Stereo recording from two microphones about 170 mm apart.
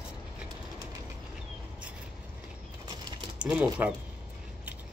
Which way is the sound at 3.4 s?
5° right (ahead or behind).